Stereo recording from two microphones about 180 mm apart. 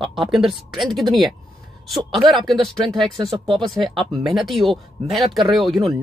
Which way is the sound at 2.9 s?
Centre (ahead or behind).